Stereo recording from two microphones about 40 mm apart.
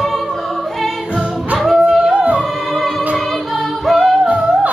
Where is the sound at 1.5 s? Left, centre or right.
Centre.